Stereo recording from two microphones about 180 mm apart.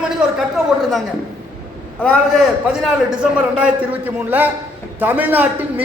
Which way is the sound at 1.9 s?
5° left (ahead or behind).